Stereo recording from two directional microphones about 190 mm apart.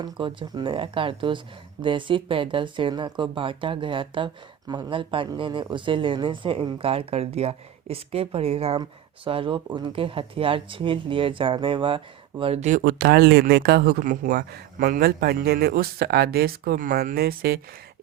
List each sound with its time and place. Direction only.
0.0 s speech: 25° right (ahead or behind)
12.8 s speech: 55° right (ahead or behind)